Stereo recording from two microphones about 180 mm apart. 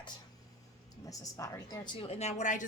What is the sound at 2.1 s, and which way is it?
Speech, 40° left (ahead or behind).